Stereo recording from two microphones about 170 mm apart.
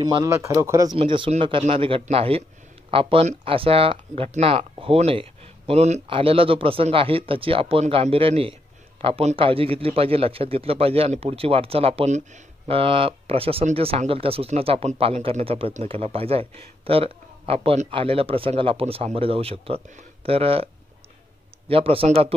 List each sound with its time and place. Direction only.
0.0 s speech: 25° right (ahead or behind)
0.9 s a man's voice: 30° right (ahead or behind)